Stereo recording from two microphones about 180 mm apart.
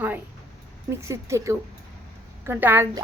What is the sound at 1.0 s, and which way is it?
A woman's voice, 15° right (ahead or behind).